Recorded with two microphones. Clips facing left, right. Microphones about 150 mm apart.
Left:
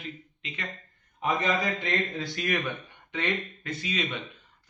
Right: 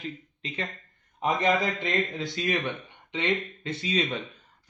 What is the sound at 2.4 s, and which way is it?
A man's voice, 25° right (ahead or behind).